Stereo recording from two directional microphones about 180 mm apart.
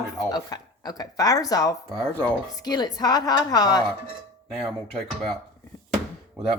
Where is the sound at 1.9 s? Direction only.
10° left (ahead or behind).